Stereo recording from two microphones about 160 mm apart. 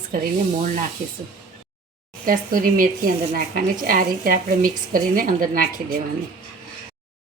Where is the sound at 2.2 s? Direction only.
60° right (ahead or behind).